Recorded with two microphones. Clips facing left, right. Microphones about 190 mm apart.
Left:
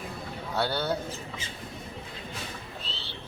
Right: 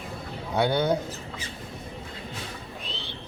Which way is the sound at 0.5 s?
15° right (ahead or behind).